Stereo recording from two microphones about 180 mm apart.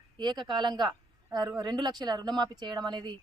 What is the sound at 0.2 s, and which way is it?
Speech, 25° right (ahead or behind).